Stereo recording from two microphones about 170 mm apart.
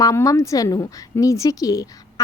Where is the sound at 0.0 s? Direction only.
20° left (ahead or behind).